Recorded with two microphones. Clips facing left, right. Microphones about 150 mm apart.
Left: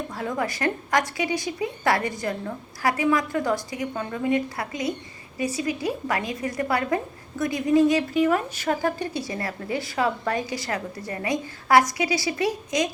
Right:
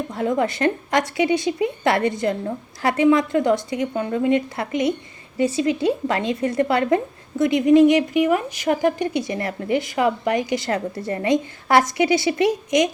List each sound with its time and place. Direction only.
0.1 s a woman's voice: 25° right (ahead or behind)